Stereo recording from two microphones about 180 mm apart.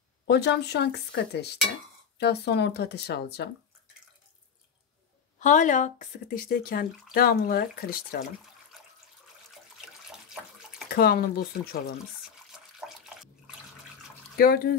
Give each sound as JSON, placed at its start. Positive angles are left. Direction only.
{"t": 0.3, "sound": "speech", "side_deg": 65}
{"t": 5.4, "sound": "speech", "side_deg": 45}
{"t": 9.8, "sound": "water", "side_deg": 0}
{"t": 10.9, "sound": "speech", "side_deg": 60}
{"t": 12.5, "sound": "water tap", "side_deg": -5}
{"t": 14.3, "sound": "speech", "side_deg": 55}